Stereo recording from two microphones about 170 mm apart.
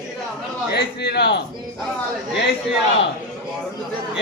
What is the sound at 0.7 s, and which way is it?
Speech, 75° left (ahead or behind).